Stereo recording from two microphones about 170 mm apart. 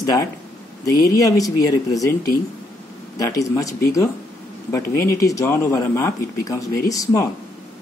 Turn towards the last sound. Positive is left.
turn(degrees=20)  # may be behind; listen again after turning